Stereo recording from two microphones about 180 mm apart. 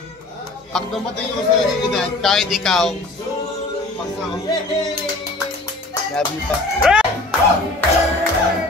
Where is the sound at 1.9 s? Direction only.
Centre (ahead or behind).